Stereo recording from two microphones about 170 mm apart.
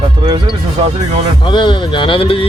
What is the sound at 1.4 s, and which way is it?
Speech, 30° left (ahead or behind).